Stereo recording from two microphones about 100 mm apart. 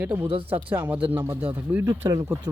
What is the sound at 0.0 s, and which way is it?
Speech, 20° right (ahead or behind).